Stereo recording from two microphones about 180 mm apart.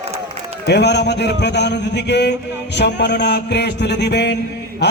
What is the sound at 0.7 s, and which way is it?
A man's voice, 70° left (ahead or behind).